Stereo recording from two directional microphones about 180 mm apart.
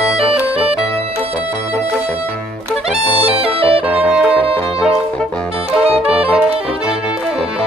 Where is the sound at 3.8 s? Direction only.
10° right (ahead or behind).